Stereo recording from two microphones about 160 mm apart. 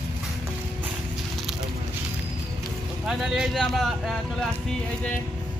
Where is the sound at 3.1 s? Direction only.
5° right (ahead or behind).